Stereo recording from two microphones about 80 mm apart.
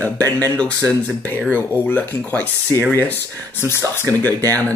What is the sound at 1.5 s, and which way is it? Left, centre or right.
Speech, left.